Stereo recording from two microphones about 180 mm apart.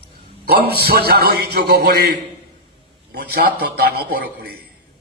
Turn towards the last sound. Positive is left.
turn(degrees=-60)  # may be behind; listen again after turning